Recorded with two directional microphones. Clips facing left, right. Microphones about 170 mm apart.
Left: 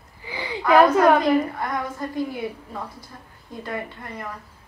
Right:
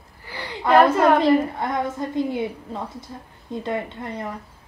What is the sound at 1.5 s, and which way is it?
A woman's voice, 25° right (ahead or behind).